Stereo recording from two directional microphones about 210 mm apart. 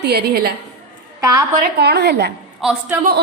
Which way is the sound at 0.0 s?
50° right (ahead or behind).